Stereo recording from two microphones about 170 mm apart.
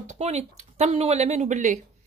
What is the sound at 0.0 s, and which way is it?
Speech, 40° right (ahead or behind).